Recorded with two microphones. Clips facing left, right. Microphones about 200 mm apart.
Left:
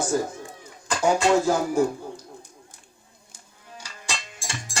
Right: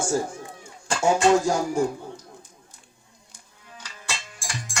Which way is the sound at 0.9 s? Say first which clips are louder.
Right 1 dB; 30° right (ahead or behind).